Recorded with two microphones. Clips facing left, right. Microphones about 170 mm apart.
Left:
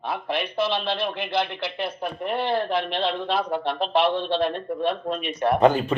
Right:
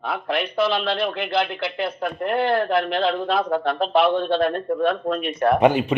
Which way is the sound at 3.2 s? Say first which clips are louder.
Right 3 dB; 50° right (ahead or behind).